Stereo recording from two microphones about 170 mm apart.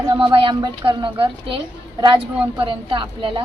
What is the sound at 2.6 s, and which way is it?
Speech, 30° right (ahead or behind).